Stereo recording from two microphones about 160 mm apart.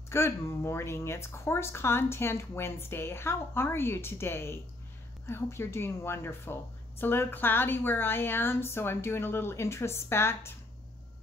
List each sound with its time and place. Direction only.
0.1 s speech: 15° left (ahead or behind)